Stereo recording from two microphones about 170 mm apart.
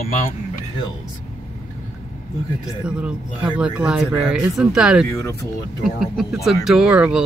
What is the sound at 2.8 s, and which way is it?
Speech, 5° right (ahead or behind).